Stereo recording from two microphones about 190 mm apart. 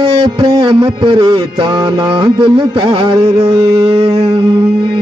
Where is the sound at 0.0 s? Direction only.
25° right (ahead or behind).